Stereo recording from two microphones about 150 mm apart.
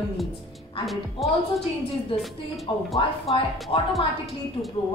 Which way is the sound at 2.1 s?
35° left (ahead or behind).